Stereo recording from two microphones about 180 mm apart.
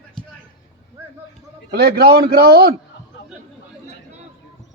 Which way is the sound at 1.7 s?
65° right (ahead or behind).